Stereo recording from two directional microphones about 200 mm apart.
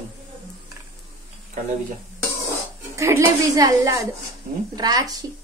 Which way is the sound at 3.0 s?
15° right (ahead or behind).